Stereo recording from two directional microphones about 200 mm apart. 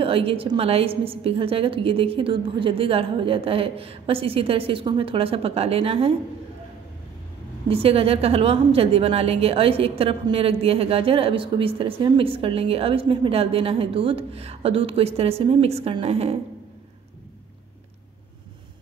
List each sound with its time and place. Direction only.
0.0 s a woman's voice: 30° right (ahead or behind)
7.6 s a woman's voice: 30° right (ahead or behind)